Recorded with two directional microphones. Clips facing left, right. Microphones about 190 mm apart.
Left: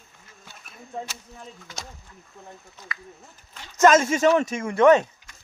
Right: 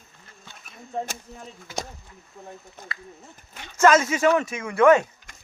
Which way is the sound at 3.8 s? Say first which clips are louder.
Left 1 dB; 20° left (ahead or behind).